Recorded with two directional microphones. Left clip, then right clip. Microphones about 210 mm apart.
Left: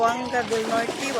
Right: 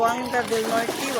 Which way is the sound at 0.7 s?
35° right (ahead or behind).